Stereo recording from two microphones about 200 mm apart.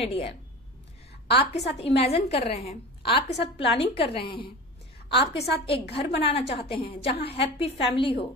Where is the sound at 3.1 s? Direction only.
60° left (ahead or behind).